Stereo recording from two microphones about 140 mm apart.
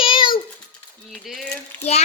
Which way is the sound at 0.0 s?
35° left (ahead or behind).